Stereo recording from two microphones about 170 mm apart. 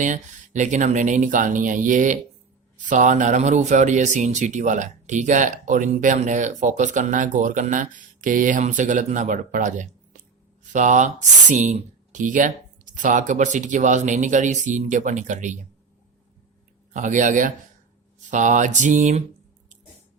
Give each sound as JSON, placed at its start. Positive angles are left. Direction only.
{"t": 0.0, "sound": "speech", "side_deg": -45}
{"t": 16.9, "sound": "speech", "side_deg": -50}